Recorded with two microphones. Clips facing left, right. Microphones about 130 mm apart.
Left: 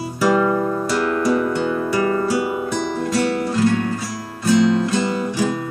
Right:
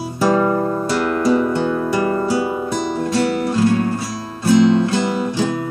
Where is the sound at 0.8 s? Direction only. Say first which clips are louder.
Right 3 dB; 25° right (ahead or behind).